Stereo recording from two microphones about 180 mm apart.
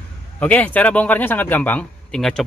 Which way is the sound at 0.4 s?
10° left (ahead or behind).